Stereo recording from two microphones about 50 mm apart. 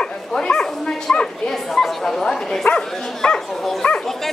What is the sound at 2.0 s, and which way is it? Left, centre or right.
Speech, centre.